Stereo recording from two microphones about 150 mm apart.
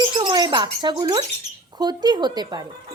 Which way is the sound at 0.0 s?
30° right (ahead or behind).